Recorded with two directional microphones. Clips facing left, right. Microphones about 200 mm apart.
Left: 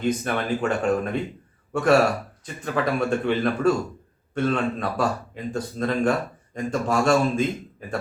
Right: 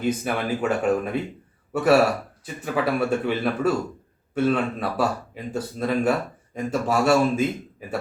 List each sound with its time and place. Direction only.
0.0 s speech: 5° right (ahead or behind)